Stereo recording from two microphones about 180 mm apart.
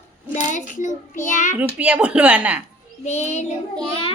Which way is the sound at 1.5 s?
10° right (ahead or behind).